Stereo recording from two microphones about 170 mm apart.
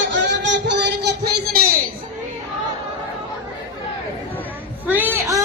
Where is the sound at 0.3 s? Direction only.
90° right.